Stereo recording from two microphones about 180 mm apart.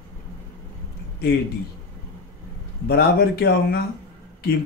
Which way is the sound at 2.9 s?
60° left (ahead or behind).